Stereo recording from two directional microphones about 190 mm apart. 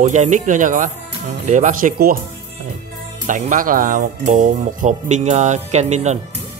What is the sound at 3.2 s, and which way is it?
Speech, 45° right (ahead or behind).